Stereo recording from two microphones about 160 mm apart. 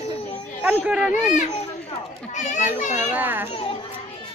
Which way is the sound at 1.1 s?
50° left (ahead or behind).